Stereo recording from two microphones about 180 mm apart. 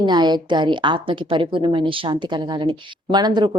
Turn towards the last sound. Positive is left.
turn(degrees=-25)  # may be behind; listen again after turning